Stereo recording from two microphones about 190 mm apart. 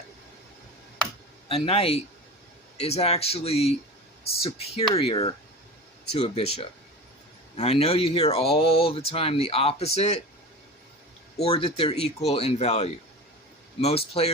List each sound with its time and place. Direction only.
1.5 s speech: 30° left (ahead or behind)
11.4 s speech: 30° left (ahead or behind)